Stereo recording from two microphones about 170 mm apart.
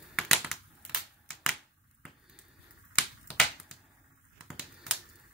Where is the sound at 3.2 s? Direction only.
5° right (ahead or behind).